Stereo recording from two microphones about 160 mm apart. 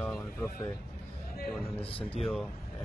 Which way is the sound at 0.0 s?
10° left (ahead or behind).